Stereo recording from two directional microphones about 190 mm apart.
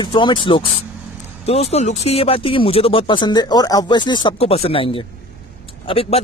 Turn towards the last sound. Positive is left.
turn(degrees=30)  # may be behind; listen again after turning